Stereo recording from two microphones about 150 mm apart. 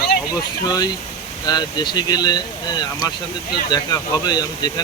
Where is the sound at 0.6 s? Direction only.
25° left (ahead or behind).